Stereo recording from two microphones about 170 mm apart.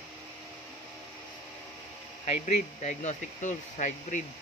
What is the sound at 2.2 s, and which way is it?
Speech, 45° left (ahead or behind).